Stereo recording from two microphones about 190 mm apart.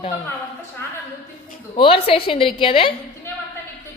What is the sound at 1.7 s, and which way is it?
A woman's voice, 30° left (ahead or behind).